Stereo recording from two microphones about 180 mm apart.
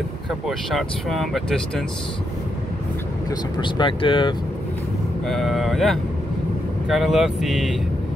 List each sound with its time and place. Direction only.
0.5 s speech: centre (ahead or behind)
3.3 s speech: 25° left (ahead or behind)
5.3 s speech: centre (ahead or behind)